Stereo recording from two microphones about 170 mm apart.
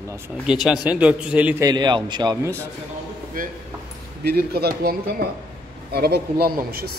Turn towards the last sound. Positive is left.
turn(degrees=-65)  # may be behind; listen again after turning